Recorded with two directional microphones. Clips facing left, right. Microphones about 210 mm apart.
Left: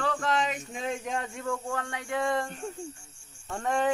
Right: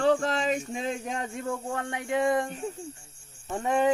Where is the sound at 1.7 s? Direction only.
20° right (ahead or behind).